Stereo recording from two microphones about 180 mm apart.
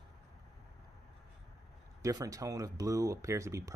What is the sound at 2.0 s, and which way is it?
Speech, 20° right (ahead or behind).